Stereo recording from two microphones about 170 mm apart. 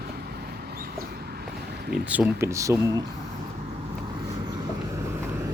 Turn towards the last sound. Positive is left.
turn(degrees=-15)  # may be behind; listen again after turning